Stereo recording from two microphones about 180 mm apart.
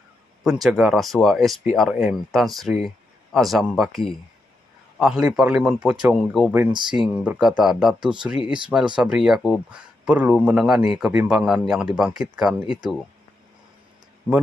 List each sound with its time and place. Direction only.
0.4 s a man's voice: centre (ahead or behind)
6.7 s speech: 25° right (ahead or behind)
7.2 s a man's voice: 5° right (ahead or behind)